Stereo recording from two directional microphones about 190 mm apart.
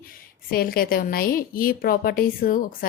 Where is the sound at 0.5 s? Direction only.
50° left (ahead or behind).